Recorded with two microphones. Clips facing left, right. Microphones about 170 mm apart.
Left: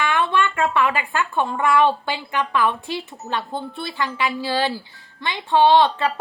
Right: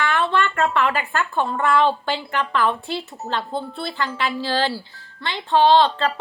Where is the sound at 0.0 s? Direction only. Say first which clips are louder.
Even; 15° left (ahead or behind).